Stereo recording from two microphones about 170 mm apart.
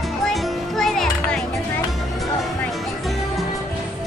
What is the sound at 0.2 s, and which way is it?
Music, centre (ahead or behind).